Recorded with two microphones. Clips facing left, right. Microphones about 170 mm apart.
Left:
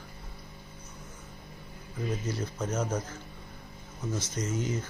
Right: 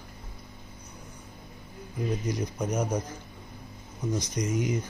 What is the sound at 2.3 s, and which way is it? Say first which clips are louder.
Speech: right 3 dB; 15° right (ahead or behind).